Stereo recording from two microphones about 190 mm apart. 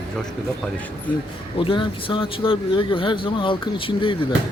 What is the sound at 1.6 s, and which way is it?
Speech, 25° left (ahead or behind).